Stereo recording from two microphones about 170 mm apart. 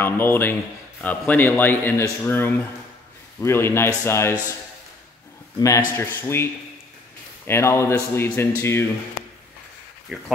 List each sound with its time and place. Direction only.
0.0 s a man's voice: 10° left (ahead or behind)
5.6 s a man's voice: 15° left (ahead or behind)
10.1 s speech: centre (ahead or behind)